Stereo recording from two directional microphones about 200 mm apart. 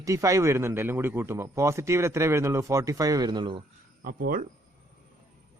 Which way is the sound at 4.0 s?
45° right (ahead or behind).